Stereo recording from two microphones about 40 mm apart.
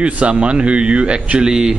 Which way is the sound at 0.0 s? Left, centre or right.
Right.